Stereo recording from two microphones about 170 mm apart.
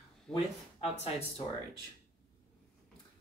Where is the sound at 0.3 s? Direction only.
35° left (ahead or behind).